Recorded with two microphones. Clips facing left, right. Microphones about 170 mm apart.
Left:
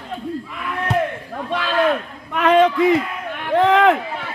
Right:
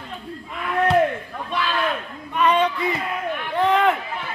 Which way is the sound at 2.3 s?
90° left.